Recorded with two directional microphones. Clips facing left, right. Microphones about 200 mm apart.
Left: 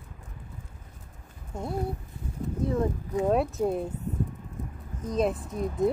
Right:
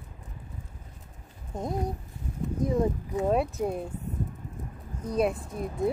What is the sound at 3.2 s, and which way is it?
Speech, centre (ahead or behind).